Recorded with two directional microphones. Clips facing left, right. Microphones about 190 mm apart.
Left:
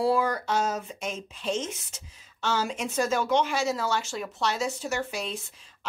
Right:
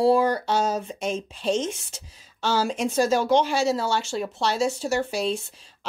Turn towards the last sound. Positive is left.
turn(degrees=-30)  # may be behind; listen again after turning